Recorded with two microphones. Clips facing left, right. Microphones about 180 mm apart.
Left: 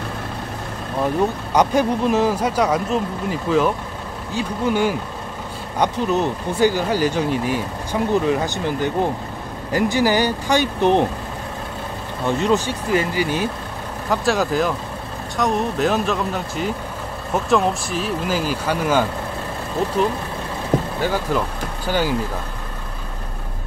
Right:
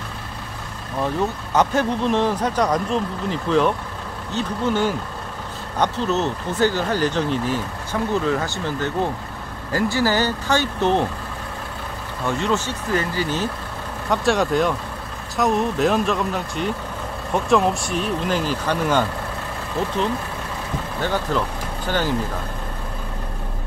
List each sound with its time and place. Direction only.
1.5 s speech: 15° left (ahead or behind)
12.3 s speech: 15° left (ahead or behind)
14.0 s speech: centre (ahead or behind)
21.0 s speech: 10° left (ahead or behind)